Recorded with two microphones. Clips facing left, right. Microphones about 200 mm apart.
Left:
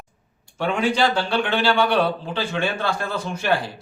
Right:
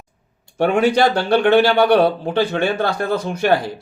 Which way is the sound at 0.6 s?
60° right (ahead or behind).